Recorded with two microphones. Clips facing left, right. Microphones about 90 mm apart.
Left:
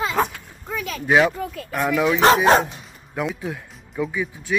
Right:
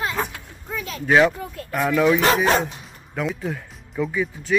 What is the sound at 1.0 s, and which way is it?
Speech, 5° left (ahead or behind).